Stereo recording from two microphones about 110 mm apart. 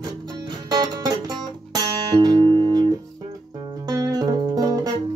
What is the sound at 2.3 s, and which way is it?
Guitar, 50° right (ahead or behind).